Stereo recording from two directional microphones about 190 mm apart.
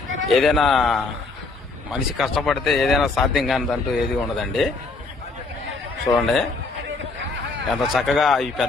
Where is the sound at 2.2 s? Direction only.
Centre (ahead or behind).